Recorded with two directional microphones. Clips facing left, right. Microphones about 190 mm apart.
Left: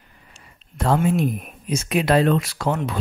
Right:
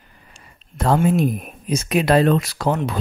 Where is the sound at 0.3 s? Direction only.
40° right (ahead or behind).